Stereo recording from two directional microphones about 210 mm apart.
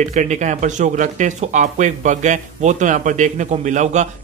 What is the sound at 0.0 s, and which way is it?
Speech, 35° right (ahead or behind).